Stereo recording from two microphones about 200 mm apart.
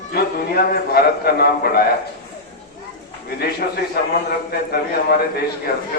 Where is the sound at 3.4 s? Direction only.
50° left (ahead or behind).